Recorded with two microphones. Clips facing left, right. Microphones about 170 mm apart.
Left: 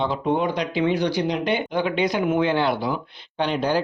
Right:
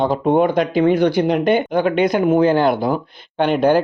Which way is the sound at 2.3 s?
40° right (ahead or behind).